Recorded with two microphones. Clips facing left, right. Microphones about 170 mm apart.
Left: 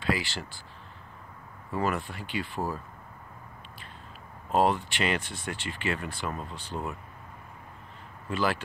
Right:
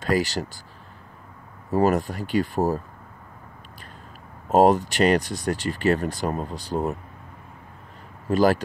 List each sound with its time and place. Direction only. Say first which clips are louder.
0.0 s speech: right 7 dB; 40° right (ahead or behind)
1.7 s speech: right 9 dB; 40° right (ahead or behind)
4.5 s speech: right 8 dB; 40° right (ahead or behind)
8.3 s speech: right 10 dB; 40° right (ahead or behind)